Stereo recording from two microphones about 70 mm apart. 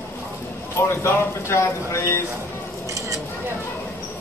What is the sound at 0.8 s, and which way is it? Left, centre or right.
Speech, left.